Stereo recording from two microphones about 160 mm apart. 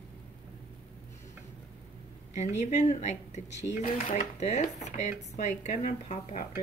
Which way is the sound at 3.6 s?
60° left (ahead or behind).